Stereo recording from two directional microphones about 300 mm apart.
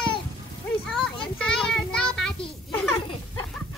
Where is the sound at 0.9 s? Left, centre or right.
Centre.